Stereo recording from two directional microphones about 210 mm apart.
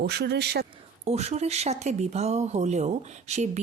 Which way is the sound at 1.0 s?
30° right (ahead or behind).